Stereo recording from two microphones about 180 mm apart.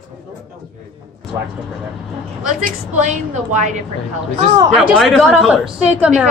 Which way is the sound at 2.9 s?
40° right (ahead or behind).